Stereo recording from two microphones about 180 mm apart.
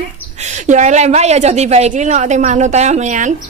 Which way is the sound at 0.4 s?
40° right (ahead or behind).